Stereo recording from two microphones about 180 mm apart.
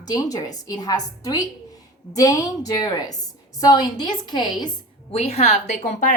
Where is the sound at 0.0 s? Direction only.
20° left (ahead or behind).